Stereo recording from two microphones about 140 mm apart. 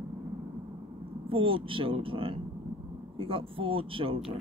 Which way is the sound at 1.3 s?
40° right (ahead or behind).